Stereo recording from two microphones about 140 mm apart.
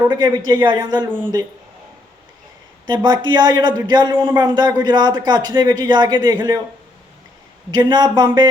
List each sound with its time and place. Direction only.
0.1 s speech: 30° right (ahead or behind)
2.8 s speech: 30° right (ahead or behind)
7.7 s speech: 30° right (ahead or behind)